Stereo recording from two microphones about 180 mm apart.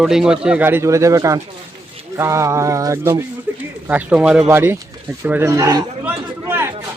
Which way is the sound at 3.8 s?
10° right (ahead or behind).